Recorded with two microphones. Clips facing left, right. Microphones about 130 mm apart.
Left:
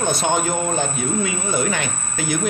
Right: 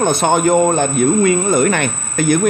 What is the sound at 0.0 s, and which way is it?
Speech, 55° right (ahead or behind).